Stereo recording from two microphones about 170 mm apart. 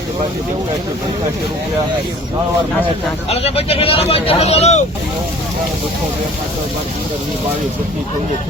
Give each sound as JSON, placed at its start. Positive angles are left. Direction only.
{"t": 3.2, "sound": "speech", "side_deg": 35}